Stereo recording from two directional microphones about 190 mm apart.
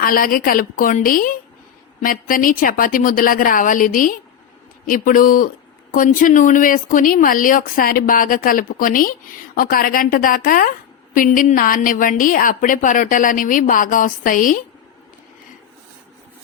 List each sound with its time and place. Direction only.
0.0 s a woman's voice: 50° left (ahead or behind)